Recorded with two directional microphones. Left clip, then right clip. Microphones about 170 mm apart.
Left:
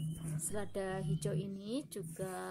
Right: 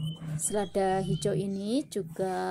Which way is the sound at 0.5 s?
20° right (ahead or behind).